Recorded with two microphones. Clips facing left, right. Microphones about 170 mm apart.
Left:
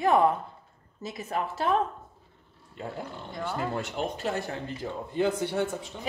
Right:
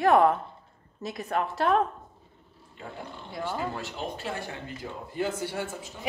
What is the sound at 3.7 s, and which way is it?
Speech, 45° left (ahead or behind).